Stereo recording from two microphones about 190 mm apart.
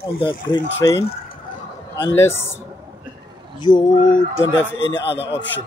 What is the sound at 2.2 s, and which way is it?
Speech, 15° left (ahead or behind).